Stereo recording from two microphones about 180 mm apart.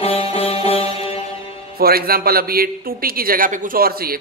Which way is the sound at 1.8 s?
55° right (ahead or behind).